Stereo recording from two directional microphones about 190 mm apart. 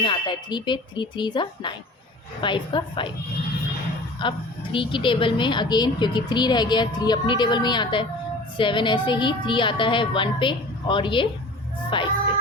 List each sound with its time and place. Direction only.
0.0 s a woman's voice: 25° left (ahead or behind)
4.2 s a woman's voice: 25° left (ahead or behind)